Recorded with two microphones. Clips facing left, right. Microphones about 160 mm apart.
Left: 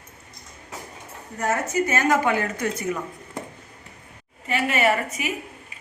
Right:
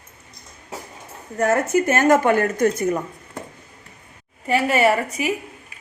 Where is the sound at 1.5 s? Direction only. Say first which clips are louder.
Right 4 dB; 50° right (ahead or behind).